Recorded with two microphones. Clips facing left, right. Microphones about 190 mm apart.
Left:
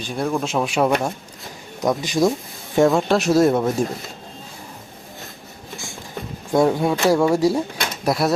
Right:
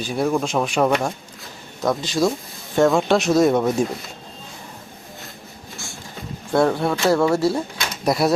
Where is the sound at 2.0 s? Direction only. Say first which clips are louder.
Left 1 dB; 15° left (ahead or behind).